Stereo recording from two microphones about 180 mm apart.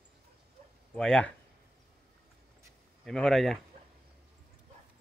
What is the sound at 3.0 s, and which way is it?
Speech, centre (ahead or behind).